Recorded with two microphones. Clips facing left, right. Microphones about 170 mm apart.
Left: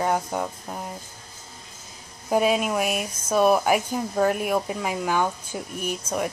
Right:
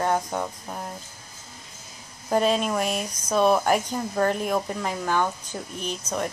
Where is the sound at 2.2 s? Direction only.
10° left (ahead or behind).